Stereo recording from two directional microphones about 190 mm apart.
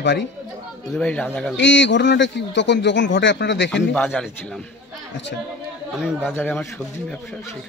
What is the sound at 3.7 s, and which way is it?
Speech, 5° left (ahead or behind).